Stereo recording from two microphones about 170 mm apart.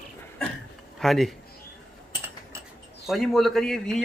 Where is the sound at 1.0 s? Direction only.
Centre (ahead or behind).